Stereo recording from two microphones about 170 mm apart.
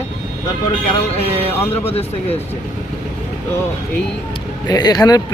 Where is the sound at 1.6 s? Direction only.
15° left (ahead or behind).